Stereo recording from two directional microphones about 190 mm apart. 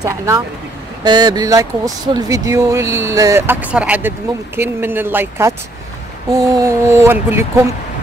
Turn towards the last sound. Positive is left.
turn(degrees=-15)  # may be behind; listen again after turning